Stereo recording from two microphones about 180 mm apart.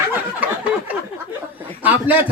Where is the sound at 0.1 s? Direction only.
10° right (ahead or behind).